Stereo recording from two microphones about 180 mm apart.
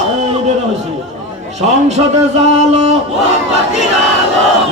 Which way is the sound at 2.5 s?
40° right (ahead or behind).